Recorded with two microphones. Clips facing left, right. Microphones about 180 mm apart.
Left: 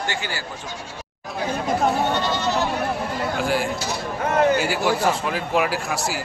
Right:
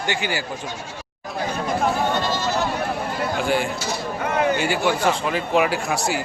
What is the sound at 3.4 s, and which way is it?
Speech, centre (ahead or behind).